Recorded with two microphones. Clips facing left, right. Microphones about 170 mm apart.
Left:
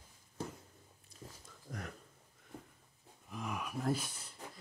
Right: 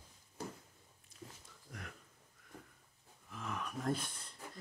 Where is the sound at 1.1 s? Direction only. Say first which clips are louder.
Even; 35° left (ahead or behind).